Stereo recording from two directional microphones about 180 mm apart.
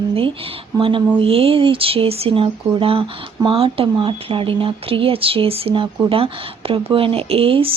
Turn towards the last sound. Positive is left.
turn(degrees=-30)  # may be behind; listen again after turning